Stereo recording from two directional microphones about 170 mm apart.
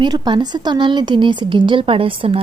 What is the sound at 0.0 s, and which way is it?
A woman's voice, 25° right (ahead or behind).